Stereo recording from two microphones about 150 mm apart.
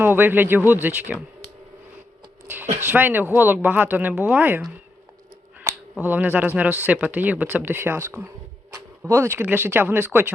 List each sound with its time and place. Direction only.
0.0 s speech: 15° right (ahead or behind)
2.8 s speech: 15° right (ahead or behind)
6.0 s speech: 10° right (ahead or behind)